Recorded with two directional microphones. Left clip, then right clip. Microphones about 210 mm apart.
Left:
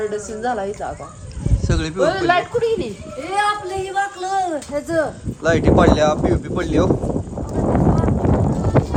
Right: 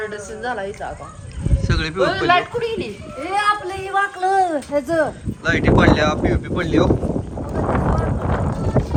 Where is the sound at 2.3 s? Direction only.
50° left (ahead or behind).